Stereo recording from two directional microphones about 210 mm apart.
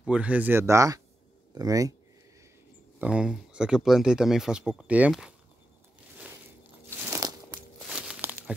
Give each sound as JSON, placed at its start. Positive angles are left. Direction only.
{"t": 0.0, "sound": "speech", "side_deg": -5}
{"t": 3.0, "sound": "speech", "side_deg": -5}
{"t": 7.0, "sound": "a sound", "side_deg": -15}
{"t": 7.9, "sound": "crumpling", "side_deg": -5}